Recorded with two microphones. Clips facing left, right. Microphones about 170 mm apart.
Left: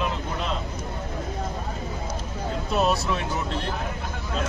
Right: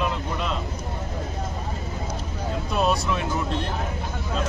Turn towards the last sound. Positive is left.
turn(degrees=0)  # may be behind; listen again after turning